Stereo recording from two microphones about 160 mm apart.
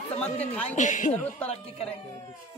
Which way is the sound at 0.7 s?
50° left (ahead or behind).